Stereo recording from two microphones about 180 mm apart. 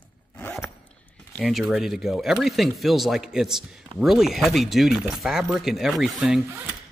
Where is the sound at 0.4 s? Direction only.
10° left (ahead or behind).